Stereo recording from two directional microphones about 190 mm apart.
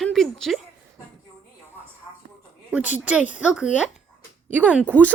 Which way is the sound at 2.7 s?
5° right (ahead or behind).